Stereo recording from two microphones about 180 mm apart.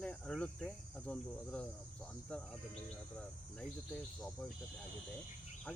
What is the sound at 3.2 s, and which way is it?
Cricket, 5° left (ahead or behind).